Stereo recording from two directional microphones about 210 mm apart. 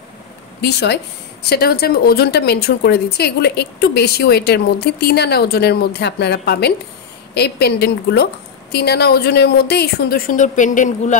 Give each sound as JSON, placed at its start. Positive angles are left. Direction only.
{"t": 0.6, "sound": "a woman's voice", "side_deg": 55}